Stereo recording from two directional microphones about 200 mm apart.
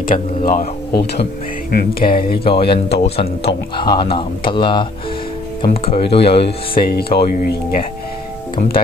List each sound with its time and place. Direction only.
0.0 s speech: 45° left (ahead or behind)
2.4 s speech: 25° left (ahead or behind)
6.8 s speech: 50° left (ahead or behind)